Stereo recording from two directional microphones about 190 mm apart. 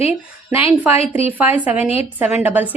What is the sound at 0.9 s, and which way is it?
Speech, 30° left (ahead or behind).